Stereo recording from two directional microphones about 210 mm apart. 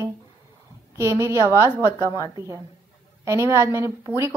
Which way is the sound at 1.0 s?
15° right (ahead or behind).